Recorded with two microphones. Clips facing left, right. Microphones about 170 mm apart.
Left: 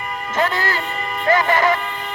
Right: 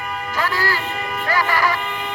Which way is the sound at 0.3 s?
20° left (ahead or behind).